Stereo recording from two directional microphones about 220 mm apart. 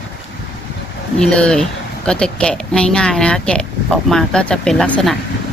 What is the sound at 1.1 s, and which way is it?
Speech, 5° left (ahead or behind).